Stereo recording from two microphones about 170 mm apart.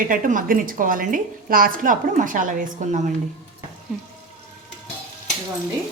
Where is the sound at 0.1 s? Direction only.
55° right (ahead or behind).